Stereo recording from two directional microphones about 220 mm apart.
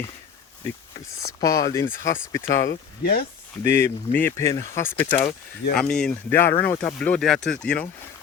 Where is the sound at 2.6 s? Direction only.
45° left (ahead or behind).